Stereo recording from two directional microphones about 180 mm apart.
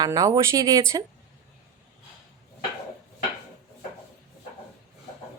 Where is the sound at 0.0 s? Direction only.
20° right (ahead or behind).